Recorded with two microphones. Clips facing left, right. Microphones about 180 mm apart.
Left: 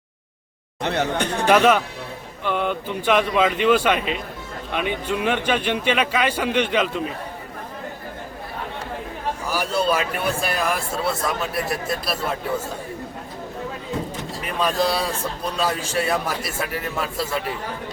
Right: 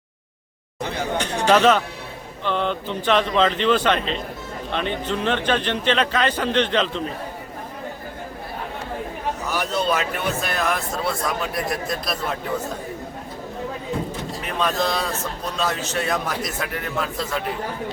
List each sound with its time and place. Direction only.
0.8 s speech: 65° left (ahead or behind)
1.5 s a man's voice: 10° left (ahead or behind)
9.5 s a man's voice: 10° left (ahead or behind)
14.4 s a man's voice: 10° left (ahead or behind)